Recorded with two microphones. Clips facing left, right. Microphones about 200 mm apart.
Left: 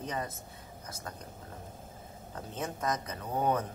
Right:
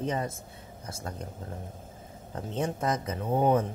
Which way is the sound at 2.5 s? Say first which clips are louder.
Right 5 dB; 30° right (ahead or behind).